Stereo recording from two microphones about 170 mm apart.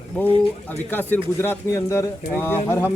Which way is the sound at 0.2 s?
10° left (ahead or behind).